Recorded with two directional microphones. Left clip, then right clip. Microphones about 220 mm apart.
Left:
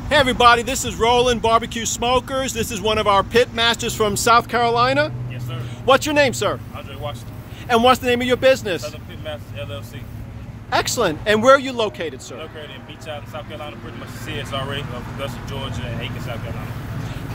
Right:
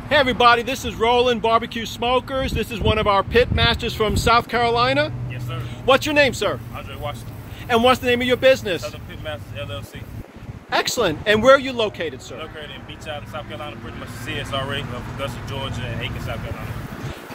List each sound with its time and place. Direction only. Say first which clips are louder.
0.1 s speech: left 1 dB; 5° left (ahead or behind)